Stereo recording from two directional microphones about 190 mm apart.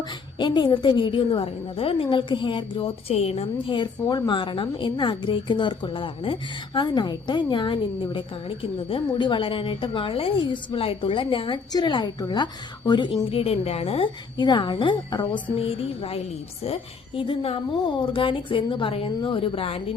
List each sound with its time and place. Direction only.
0.3 s a woman's voice: 25° left (ahead or behind)